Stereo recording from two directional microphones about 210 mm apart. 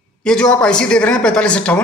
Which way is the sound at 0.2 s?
5° left (ahead or behind).